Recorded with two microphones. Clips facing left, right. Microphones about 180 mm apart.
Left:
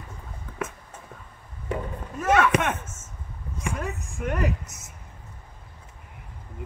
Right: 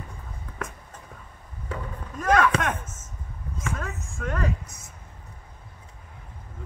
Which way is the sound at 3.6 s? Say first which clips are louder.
Left 2 dB; 15° left (ahead or behind).